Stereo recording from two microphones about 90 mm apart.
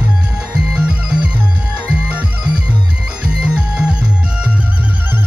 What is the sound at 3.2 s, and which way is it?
Music, 10° right (ahead or behind).